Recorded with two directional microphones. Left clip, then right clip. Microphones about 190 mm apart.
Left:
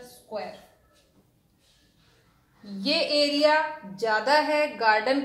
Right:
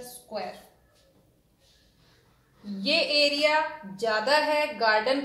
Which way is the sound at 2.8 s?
30° left (ahead or behind).